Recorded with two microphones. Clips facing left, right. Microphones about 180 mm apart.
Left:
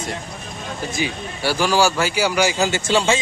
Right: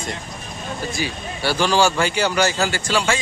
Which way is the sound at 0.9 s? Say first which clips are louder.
Left 1 dB; 15° left (ahead or behind).